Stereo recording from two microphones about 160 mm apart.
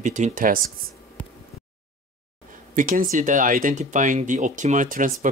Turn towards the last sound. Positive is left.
turn(degrees=-55)  # may be behind; listen again after turning